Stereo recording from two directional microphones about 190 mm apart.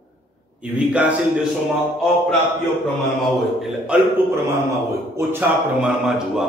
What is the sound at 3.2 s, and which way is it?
Speech, centre (ahead or behind).